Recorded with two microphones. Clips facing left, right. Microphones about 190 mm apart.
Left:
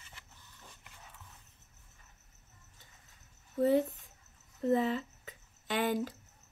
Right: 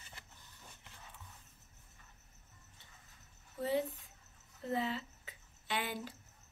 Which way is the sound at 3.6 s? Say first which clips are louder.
Left 8 dB; 45° left (ahead or behind).